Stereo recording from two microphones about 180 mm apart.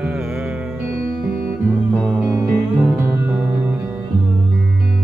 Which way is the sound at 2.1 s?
5° right (ahead or behind).